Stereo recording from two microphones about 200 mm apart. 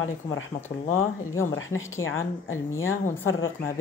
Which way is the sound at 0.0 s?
75° left (ahead or behind).